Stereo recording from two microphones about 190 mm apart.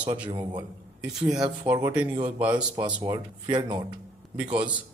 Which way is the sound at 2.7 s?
20° right (ahead or behind).